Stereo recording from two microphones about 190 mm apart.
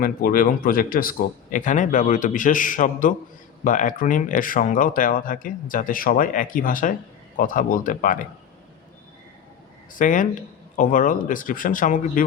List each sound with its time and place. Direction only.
0.0 s speech: 50° left (ahead or behind)
9.9 s speech: 45° left (ahead or behind)